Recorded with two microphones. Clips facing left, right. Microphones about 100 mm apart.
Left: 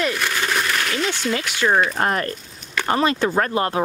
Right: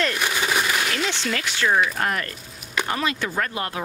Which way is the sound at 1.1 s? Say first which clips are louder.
Left 3 dB; 10° left (ahead or behind).